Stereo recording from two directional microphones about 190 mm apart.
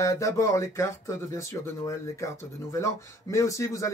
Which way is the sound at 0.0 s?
15° left (ahead or behind).